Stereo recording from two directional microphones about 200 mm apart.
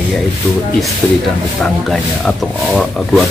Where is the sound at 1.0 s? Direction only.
5° left (ahead or behind).